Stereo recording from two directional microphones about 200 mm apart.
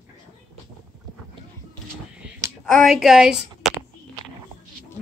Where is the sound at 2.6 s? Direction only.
Centre (ahead or behind).